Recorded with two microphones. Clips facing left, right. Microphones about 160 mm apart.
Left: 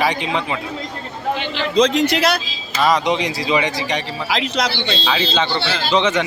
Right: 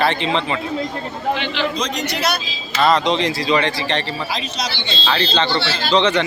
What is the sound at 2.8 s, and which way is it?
Speech, 10° left (ahead or behind).